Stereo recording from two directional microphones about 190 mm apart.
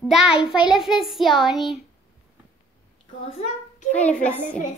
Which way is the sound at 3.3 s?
35° left (ahead or behind).